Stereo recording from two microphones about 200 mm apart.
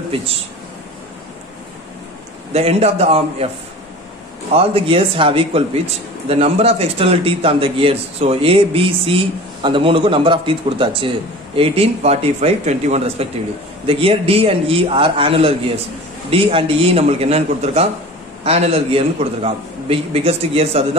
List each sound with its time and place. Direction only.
2.5 s a man's voice: 30° right (ahead or behind)
4.6 s a man's voice: 30° right (ahead or behind)